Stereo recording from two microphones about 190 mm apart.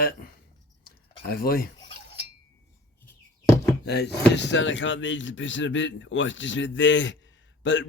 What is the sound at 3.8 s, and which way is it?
Speech, 60° left (ahead or behind).